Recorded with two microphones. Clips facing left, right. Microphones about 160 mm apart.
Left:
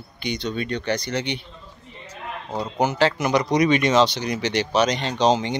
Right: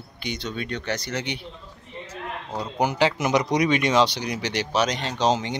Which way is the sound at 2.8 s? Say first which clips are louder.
Left 1 dB; 15° right (ahead or behind).